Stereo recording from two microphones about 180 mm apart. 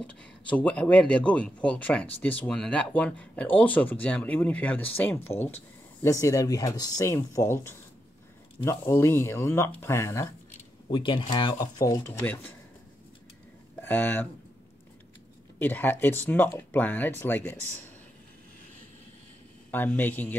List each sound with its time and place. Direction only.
0.0 s speech: 5° left (ahead or behind)
10.9 s speech: 25° left (ahead or behind)
13.7 s speech: 10° left (ahead or behind)
15.6 s speech: 10° left (ahead or behind)
19.7 s speech: 10° left (ahead or behind)